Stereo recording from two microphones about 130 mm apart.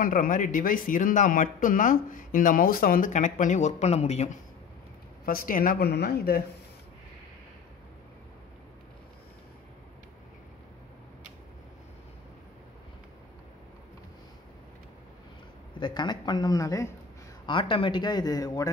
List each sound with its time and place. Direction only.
0.0 s speech: 90° left; by 4.3 s 55° left (ahead or behind)
5.2 s speech: 90° left
15.8 s speech: 35° left (ahead or behind)
17.5 s speech: 40° left (ahead or behind)